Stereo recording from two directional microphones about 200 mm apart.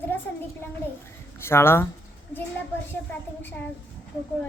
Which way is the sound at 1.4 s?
10° left (ahead or behind).